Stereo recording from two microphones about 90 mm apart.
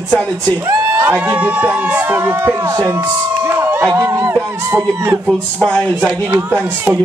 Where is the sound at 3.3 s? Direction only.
25° right (ahead or behind).